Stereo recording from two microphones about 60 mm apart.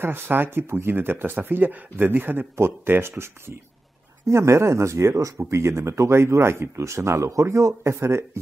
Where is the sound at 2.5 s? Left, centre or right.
Right.